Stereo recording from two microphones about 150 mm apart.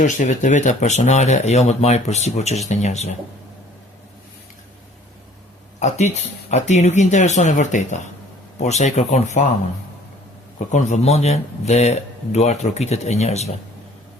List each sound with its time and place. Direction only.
0.0 s speech: 55° left (ahead or behind)
5.8 s speech: 50° left (ahead or behind)
10.7 s speech: 50° left (ahead or behind)